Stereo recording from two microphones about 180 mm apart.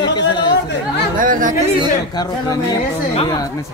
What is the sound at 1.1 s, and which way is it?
Speech, 50° right (ahead or behind).